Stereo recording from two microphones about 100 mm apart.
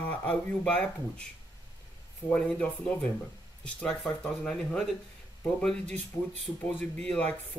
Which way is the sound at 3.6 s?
10° left (ahead or behind).